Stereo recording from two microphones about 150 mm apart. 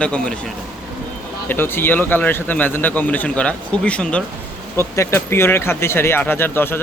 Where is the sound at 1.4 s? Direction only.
15° left (ahead or behind).